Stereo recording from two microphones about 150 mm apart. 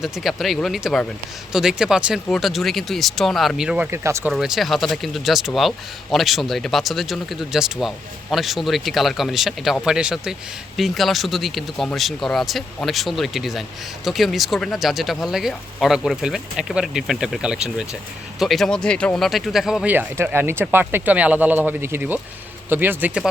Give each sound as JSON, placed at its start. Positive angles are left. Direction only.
{"t": 0.0, "sound": "speech", "side_deg": 0}
{"t": 3.9, "sound": "speech", "side_deg": -15}
{"t": 4.3, "sound": "speech", "side_deg": -5}